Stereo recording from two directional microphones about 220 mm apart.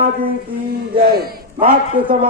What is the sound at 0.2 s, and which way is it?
Speech, 45° right (ahead or behind).